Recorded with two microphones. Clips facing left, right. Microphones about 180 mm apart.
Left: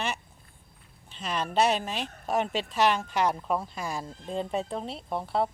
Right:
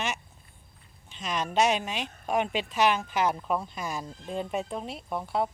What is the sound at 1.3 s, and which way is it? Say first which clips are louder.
Speech: even; 35° left (ahead or behind).